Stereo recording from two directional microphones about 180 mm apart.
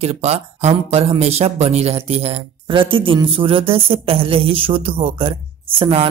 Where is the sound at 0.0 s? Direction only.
35° right (ahead or behind).